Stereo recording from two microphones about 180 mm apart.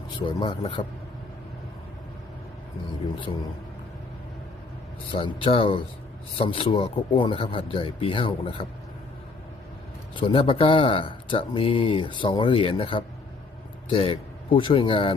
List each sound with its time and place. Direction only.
0.2 s speech: 25° left (ahead or behind)
5.1 s speech: 30° left (ahead or behind)
10.2 s speech: 30° left (ahead or behind)